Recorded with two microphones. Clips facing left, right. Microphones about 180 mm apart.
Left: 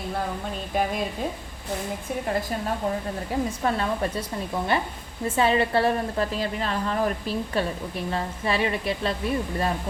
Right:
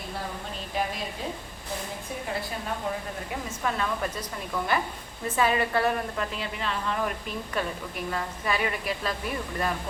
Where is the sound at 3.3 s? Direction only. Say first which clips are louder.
Left 6 dB; 35° left (ahead or behind).